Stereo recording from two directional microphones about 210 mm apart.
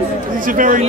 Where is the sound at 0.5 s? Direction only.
40° right (ahead or behind).